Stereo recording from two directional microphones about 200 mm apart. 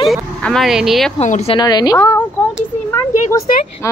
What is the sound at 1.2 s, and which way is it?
Speech, 35° left (ahead or behind).